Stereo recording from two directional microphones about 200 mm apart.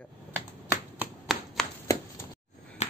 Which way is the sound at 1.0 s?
Centre (ahead or behind).